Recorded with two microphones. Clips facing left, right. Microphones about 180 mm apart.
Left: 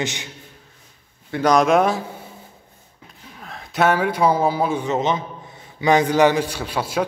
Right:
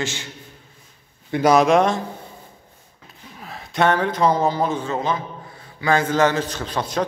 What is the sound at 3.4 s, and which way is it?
A man's voice, centre (ahead or behind).